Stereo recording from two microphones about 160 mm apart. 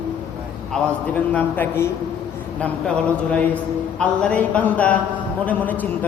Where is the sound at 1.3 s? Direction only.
10° left (ahead or behind).